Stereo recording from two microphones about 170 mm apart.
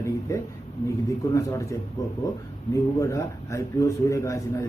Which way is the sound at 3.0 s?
20° left (ahead or behind).